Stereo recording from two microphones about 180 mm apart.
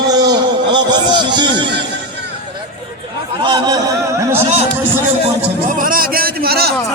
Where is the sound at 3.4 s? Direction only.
20° right (ahead or behind).